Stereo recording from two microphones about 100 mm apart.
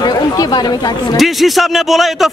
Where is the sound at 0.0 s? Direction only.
45° left (ahead or behind).